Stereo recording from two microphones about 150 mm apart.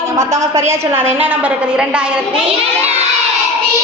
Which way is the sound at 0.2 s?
20° right (ahead or behind).